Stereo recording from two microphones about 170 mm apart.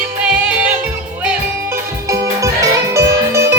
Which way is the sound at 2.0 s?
20° right (ahead or behind).